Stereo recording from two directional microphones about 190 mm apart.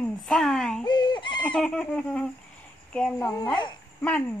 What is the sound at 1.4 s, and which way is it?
A woman's voice, 5° left (ahead or behind).